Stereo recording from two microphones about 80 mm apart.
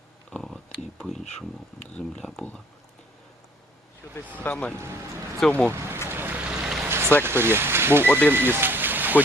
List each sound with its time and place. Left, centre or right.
0.3 s a sound: centre
0.7 s speech: centre
4.0 s speech: left
5.7 s speech: right
6.1 s vehicle: right
6.4 s vehicle: centre
6.8 s vehicle: right
7.3 s speech: right